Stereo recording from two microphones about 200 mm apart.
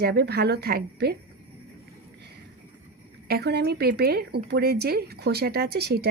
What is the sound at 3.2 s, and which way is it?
Speech, 55° right (ahead or behind).